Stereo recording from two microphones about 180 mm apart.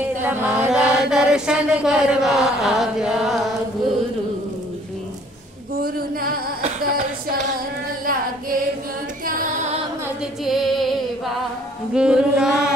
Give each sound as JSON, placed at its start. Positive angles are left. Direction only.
{"t": 0.2, "sound": "chant", "side_deg": -10}
{"t": 5.8, "sound": "a sound", "side_deg": -55}
{"t": 6.8, "sound": "music", "side_deg": -55}
{"t": 8.0, "sound": "singing", "side_deg": -50}
{"t": 9.2, "sound": "music", "side_deg": -50}
{"t": 10.4, "sound": "music", "side_deg": 0}
{"t": 11.9, "sound": "chant", "side_deg": -5}